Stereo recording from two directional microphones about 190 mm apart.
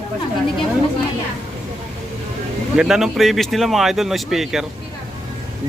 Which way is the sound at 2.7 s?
5° right (ahead or behind).